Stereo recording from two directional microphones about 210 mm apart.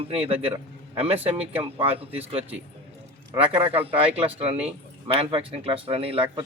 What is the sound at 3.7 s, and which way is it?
Speech, 25° right (ahead or behind).